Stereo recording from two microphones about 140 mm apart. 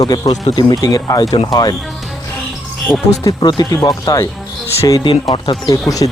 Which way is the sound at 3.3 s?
30° left (ahead or behind).